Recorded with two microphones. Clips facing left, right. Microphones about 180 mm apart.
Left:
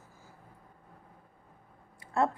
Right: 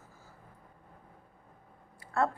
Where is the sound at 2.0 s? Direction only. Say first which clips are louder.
Left 1 dB; 20° left (ahead or behind).